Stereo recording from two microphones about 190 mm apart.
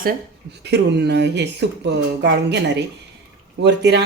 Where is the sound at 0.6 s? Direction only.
60° right (ahead or behind).